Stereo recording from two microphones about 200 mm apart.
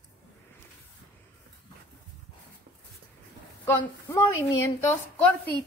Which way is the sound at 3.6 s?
15° left (ahead or behind).